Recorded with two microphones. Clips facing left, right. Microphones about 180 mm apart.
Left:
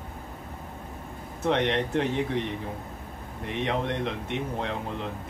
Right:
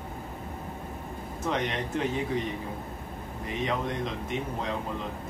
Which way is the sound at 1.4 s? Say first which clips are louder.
Left 5 dB; 70° left (ahead or behind).